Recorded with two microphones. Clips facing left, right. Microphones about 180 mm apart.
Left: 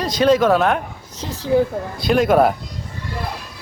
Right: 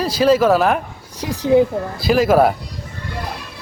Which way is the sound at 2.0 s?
5° right (ahead or behind).